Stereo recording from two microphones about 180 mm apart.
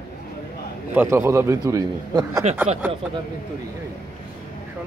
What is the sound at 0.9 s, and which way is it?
A man's voice, 15° right (ahead or behind).